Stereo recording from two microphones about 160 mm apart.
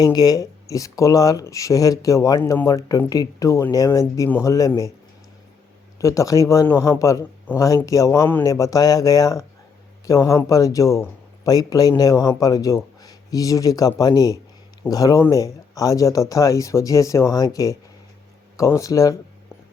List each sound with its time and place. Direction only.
0.0 s a man's voice: 25° left (ahead or behind)
6.0 s a man's voice: 20° left (ahead or behind)